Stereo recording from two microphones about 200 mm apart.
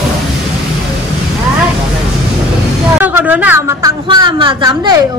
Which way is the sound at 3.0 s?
10° right (ahead or behind).